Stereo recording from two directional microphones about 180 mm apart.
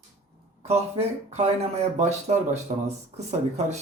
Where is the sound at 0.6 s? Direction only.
35° right (ahead or behind).